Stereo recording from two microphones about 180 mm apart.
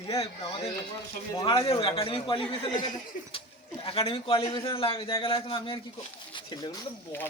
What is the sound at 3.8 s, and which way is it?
A man's voice, 30° left (ahead or behind).